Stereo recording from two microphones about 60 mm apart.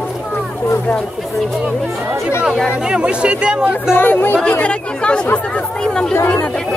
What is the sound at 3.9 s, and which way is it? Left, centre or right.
Speech, left.